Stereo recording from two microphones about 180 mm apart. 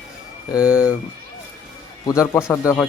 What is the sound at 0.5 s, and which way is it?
Speech, 5° right (ahead or behind).